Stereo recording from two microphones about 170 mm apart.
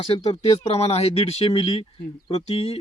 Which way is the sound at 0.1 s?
30° left (ahead or behind).